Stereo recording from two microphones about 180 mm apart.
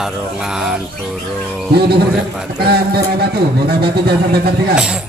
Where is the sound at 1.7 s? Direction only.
60° right (ahead or behind).